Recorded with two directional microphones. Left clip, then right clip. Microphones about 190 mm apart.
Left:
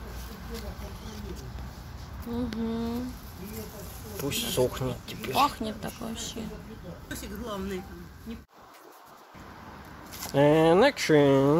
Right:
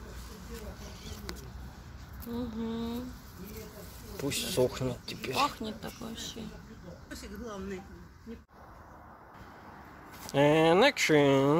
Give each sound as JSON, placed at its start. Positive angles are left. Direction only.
{"t": 2.3, "sound": "speech", "side_deg": 0}
{"t": 4.2, "sound": "speech", "side_deg": -30}
{"t": 5.4, "sound": "speech", "side_deg": 5}
{"t": 7.2, "sound": "speech", "side_deg": 65}
{"t": 10.3, "sound": "speech", "side_deg": 0}